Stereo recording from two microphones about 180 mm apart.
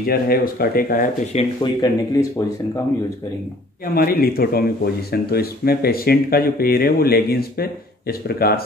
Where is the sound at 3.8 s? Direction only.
55° left (ahead or behind).